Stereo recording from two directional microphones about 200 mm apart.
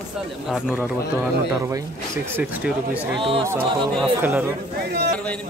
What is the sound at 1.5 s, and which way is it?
Speech, 15° right (ahead or behind).